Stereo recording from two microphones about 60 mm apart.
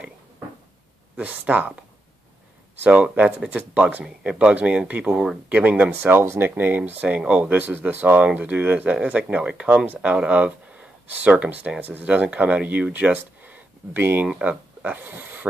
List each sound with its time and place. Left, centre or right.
1.1 s speech: right
2.8 s speech: right
5.9 s speech: right
6.5 s speech: right
14.2 s speech: centre